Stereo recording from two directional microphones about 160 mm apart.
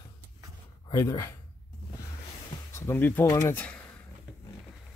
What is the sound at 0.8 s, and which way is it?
Speech, 20° left (ahead or behind).